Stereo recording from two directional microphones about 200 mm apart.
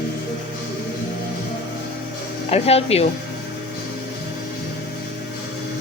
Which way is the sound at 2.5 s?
30° left (ahead or behind).